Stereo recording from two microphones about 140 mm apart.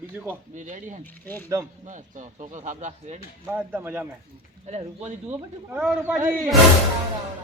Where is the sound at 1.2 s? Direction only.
15° left (ahead or behind).